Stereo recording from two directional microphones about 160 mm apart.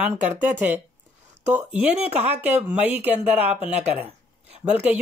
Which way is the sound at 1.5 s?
10° right (ahead or behind).